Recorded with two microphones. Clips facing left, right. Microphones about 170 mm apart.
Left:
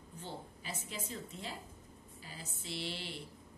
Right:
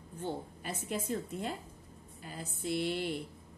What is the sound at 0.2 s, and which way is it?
A woman's voice, 55° right (ahead or behind).